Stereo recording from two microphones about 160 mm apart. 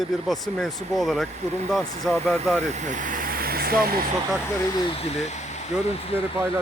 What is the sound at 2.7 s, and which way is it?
Vehicle, 50° right (ahead or behind).